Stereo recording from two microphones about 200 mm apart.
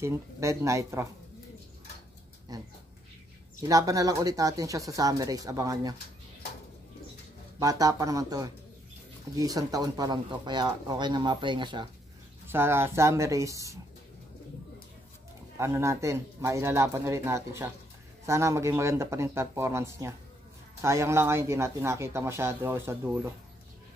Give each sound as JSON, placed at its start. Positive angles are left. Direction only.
{"t": 0.0, "sound": "speech", "side_deg": -15}
{"t": 2.5, "sound": "speech", "side_deg": -20}
{"t": 7.5, "sound": "speech", "side_deg": -15}
{"t": 12.4, "sound": "speech", "side_deg": -10}
{"t": 15.5, "sound": "speech", "side_deg": -15}